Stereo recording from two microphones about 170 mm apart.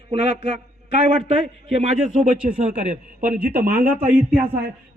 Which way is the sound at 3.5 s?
60° right (ahead or behind).